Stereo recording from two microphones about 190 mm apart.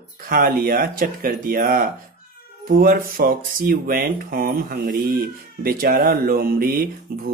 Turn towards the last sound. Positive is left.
turn(degrees=-50)  # may be behind; listen again after turning